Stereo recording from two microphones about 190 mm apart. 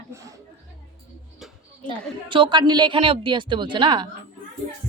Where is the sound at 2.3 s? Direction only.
25° right (ahead or behind).